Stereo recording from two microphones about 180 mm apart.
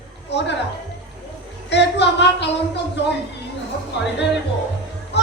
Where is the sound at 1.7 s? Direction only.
75° left (ahead or behind).